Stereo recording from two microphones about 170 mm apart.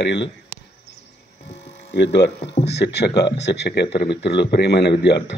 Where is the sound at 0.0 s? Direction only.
90° left.